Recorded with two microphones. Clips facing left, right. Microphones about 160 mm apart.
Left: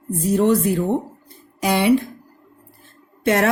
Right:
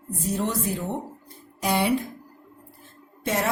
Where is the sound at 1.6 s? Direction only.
90° left.